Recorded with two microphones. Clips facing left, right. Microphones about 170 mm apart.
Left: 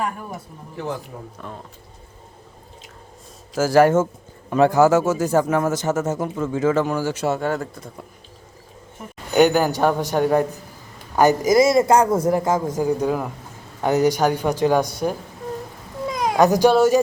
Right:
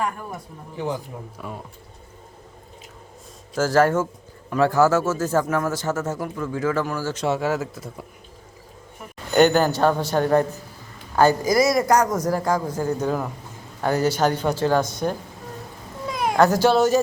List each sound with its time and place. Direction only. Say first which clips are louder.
1.4 s speech: right 2 dB; 5° right (ahead or behind)
3.5 s speech: left 3 dB; 10° left (ahead or behind)
3.9 s speech: left 4 dB; 25° left (ahead or behind); by 7.3 s 10° left (ahead or behind)
7.3 s speech: even; 5° right (ahead or behind)
9.3 s speech: left 1 dB; 10° left (ahead or behind)
16.1 s speech: left 1 dB; 15° left (ahead or behind)